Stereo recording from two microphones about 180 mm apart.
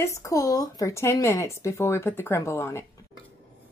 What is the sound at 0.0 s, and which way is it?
Speech, 15° left (ahead or behind).